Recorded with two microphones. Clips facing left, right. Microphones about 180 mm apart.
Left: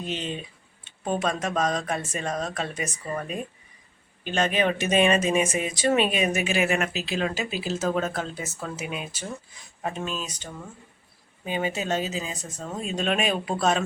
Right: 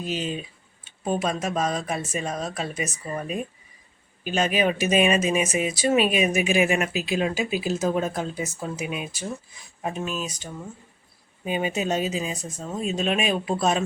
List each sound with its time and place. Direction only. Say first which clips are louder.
0.0 s speech: right 3 dB; 5° right (ahead or behind)
4.2 s speech: right 1 dB; 5° right (ahead or behind)